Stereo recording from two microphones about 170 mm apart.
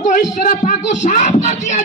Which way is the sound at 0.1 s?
50° left (ahead or behind).